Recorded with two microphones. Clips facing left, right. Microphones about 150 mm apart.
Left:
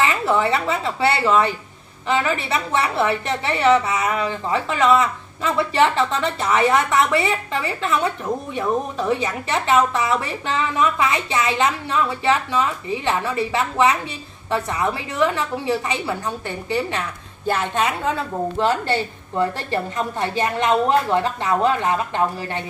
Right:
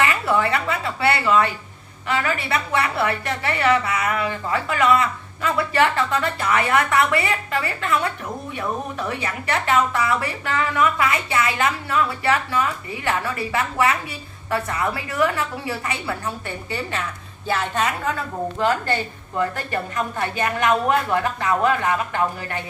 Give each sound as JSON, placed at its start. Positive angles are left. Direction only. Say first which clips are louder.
{"t": 0.0, "sound": "a woman's voice", "louder": "left 1 dB", "side_deg": 25}
{"t": 18.6, "sound": "a woman's voice", "louder": "left 1 dB", "side_deg": 25}